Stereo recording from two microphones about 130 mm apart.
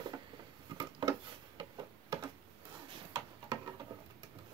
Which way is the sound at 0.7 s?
30° right (ahead or behind).